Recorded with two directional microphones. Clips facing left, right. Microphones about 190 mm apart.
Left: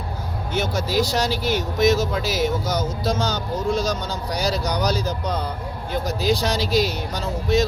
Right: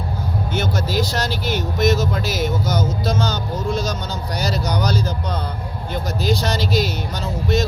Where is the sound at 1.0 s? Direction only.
35° left (ahead or behind).